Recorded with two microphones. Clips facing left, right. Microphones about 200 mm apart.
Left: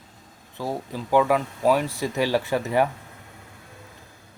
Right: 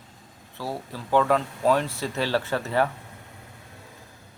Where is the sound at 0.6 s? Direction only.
15° left (ahead or behind).